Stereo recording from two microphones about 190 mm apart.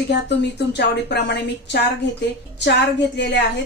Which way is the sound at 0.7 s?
65° left (ahead or behind).